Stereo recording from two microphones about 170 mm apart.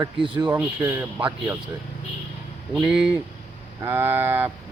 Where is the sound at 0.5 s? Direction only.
10° right (ahead or behind).